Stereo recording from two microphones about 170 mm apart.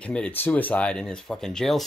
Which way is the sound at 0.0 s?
5° left (ahead or behind).